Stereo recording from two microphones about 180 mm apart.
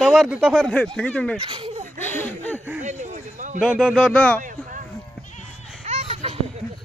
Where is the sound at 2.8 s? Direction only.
45° right (ahead or behind).